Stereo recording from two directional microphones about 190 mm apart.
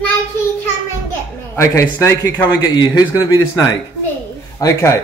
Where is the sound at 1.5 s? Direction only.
15° left (ahead or behind).